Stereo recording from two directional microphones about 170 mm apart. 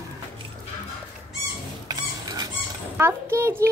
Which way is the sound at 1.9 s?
20° right (ahead or behind).